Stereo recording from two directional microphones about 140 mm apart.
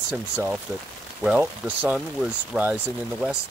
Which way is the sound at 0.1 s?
10° right (ahead or behind).